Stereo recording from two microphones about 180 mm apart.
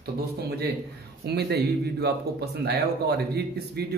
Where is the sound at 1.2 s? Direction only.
65° right (ahead or behind).